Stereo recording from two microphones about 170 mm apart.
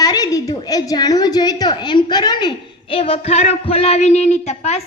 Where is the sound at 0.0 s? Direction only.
20° left (ahead or behind).